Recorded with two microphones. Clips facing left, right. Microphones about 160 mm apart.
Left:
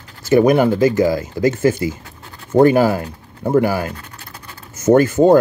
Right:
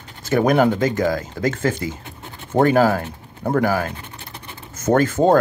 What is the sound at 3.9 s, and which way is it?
Scratch, 25° right (ahead or behind).